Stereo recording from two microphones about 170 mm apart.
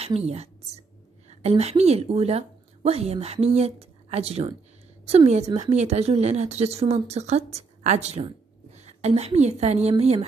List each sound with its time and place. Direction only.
0.0 s a woman's voice: 40° right (ahead or behind)